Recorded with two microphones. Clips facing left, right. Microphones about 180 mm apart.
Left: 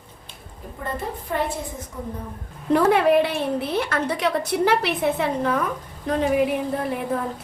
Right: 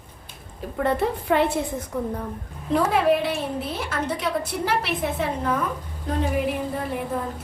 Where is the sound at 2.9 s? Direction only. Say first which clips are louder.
Left 3 dB; 60° left (ahead or behind).